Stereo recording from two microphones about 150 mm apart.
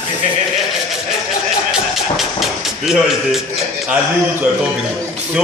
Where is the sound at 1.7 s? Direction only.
Centre (ahead or behind).